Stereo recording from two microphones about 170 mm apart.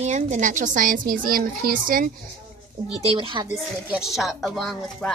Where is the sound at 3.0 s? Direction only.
30° right (ahead or behind).